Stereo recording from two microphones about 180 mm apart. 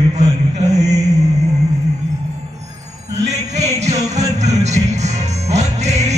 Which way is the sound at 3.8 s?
40° right (ahead or behind).